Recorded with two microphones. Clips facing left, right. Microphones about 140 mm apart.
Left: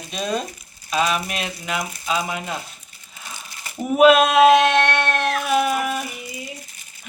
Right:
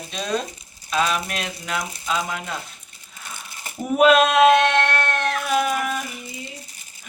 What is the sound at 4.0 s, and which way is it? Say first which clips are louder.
Cat: left 2 dB; 10° left (ahead or behind).